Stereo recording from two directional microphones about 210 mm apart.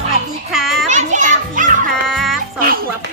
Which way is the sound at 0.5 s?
Centre (ahead or behind).